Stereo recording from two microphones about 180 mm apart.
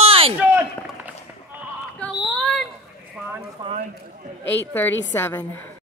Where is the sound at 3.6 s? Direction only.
40° right (ahead or behind).